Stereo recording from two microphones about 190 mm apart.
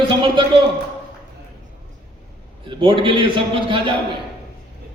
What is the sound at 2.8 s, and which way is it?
A man's voice, 25° right (ahead or behind).